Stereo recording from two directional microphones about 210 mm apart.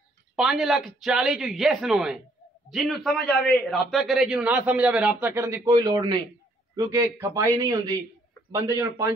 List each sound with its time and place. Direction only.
0.4 s a man's voice: centre (ahead or behind)